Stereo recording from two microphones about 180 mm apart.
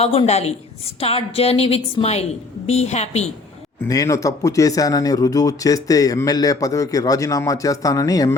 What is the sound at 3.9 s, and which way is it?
Speech, 20° left (ahead or behind).